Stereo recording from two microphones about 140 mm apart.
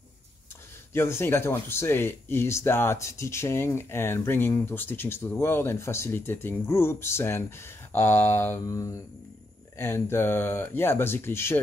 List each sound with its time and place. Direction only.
0.9 s speech: 15° left (ahead or behind)